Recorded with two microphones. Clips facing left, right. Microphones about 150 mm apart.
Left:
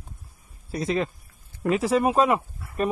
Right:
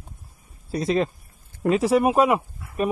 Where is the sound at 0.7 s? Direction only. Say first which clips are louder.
Right 3 dB; 25° right (ahead or behind).